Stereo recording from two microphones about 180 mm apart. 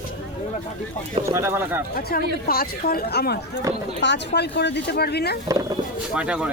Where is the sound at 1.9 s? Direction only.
55° left (ahead or behind).